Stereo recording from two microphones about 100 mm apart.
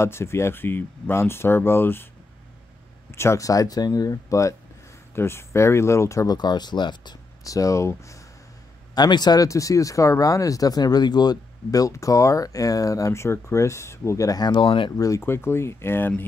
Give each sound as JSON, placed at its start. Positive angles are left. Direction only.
{"t": 0.0, "sound": "speech", "side_deg": 25}
{"t": 3.1, "sound": "speech", "side_deg": 25}
{"t": 7.4, "sound": "speech", "side_deg": 35}
{"t": 8.9, "sound": "speech", "side_deg": 45}
{"t": 15.0, "sound": "speech", "side_deg": 30}